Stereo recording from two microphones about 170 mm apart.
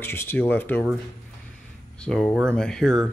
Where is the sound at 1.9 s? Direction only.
5° left (ahead or behind).